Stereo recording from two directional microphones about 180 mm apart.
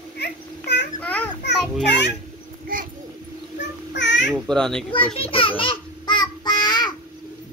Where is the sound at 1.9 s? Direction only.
70° left (ahead or behind).